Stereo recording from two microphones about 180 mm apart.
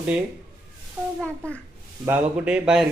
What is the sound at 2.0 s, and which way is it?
Speech, 10° right (ahead or behind).